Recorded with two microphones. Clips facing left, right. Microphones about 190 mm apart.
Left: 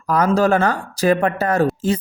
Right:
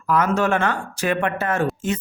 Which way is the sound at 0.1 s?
35° left (ahead or behind).